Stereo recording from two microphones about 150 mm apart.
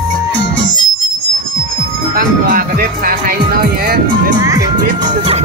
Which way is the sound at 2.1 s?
80° right.